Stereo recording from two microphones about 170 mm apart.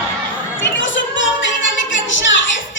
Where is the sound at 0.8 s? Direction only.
90° left.